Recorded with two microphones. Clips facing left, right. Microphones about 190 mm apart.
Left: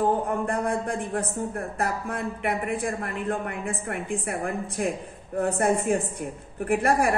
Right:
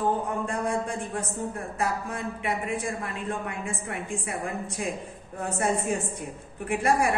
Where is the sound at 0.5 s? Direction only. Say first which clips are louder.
Left 2 dB; 55° left (ahead or behind).